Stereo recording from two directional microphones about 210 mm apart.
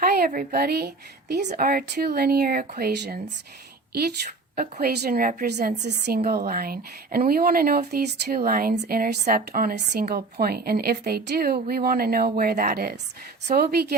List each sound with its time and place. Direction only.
0.0 s a woman's voice: 45° right (ahead or behind)
4.5 s speech: 50° right (ahead or behind)